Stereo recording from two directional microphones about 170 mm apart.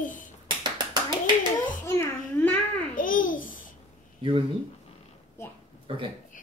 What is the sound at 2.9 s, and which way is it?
Babbling, 55° left (ahead or behind).